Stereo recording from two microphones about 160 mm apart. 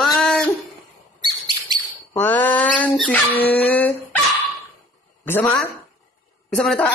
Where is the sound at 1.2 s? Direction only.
30° right (ahead or behind).